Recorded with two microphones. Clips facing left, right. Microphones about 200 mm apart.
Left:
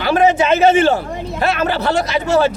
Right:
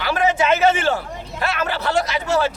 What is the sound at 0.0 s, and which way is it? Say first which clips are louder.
A man's voice: left 5 dB; 25° left (ahead or behind).